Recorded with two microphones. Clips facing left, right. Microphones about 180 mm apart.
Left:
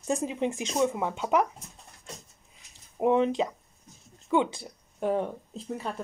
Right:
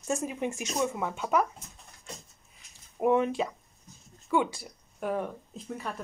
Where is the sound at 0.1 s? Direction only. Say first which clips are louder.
Left 3 dB; 20° left (ahead or behind).